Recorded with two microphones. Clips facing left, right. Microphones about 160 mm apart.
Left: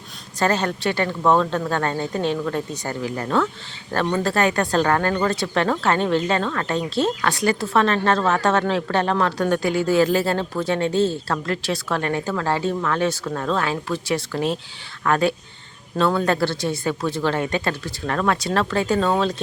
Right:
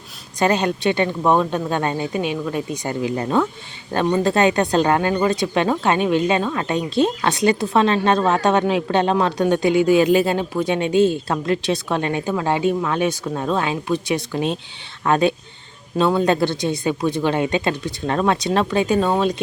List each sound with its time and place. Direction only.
0.3 s a woman's voice: 15° right (ahead or behind)